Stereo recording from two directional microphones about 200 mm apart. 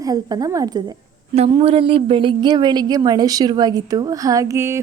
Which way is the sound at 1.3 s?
30° right (ahead or behind).